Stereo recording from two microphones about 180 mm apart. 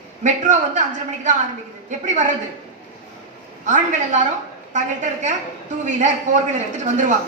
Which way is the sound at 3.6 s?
45° right (ahead or behind).